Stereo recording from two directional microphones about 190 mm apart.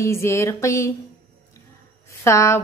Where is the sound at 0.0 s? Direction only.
15° left (ahead or behind).